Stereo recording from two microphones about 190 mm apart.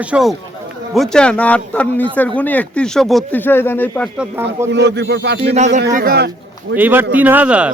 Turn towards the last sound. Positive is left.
turn(degrees=-5)  # may be behind; listen again after turning